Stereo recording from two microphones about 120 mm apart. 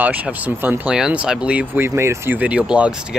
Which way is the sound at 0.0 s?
15° right (ahead or behind).